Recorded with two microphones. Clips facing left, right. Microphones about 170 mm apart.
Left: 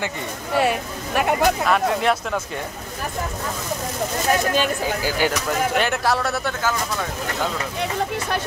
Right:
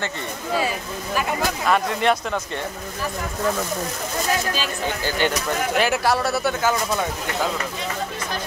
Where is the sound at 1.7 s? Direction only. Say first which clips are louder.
Even; centre (ahead or behind).